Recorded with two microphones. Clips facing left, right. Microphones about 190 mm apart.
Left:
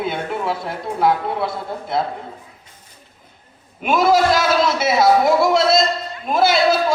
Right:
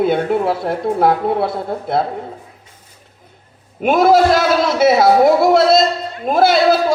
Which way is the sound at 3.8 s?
55° right (ahead or behind).